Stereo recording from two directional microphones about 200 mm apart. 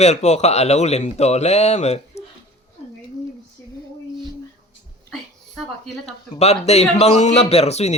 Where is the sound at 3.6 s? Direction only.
10° left (ahead or behind).